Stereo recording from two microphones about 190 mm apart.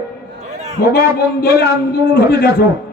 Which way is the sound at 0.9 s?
55° left (ahead or behind).